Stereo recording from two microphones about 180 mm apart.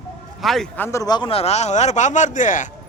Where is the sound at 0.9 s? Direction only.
20° left (ahead or behind); by 2.7 s 45° left (ahead or behind).